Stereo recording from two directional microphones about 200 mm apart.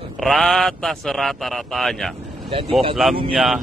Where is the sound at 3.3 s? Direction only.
Centre (ahead or behind).